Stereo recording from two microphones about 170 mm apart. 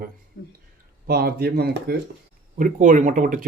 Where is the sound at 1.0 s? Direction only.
65° right (ahead or behind).